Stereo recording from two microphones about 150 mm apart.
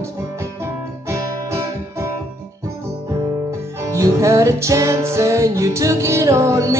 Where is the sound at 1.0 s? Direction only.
20° right (ahead or behind).